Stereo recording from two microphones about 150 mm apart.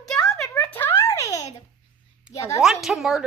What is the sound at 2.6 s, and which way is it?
Speech, centre (ahead or behind).